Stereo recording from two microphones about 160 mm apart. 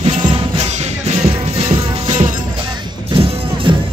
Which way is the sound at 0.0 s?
35° right (ahead or behind).